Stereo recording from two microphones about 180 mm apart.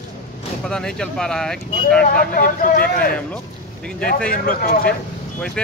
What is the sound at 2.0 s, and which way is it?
Speech, 50° left (ahead or behind).